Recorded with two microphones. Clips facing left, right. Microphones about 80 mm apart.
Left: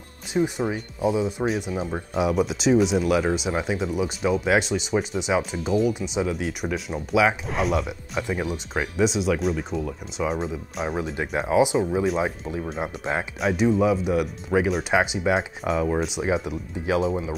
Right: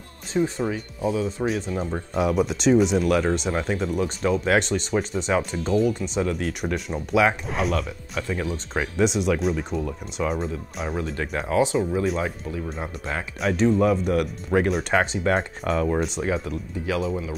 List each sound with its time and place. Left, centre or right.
0.3 s speech: centre
8.9 s speech: centre
11.1 s speech: centre